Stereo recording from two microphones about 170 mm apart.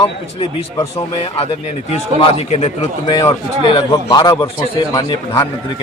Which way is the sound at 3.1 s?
20° left (ahead or behind).